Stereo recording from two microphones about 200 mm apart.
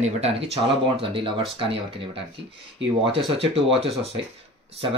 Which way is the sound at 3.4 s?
30° right (ahead or behind).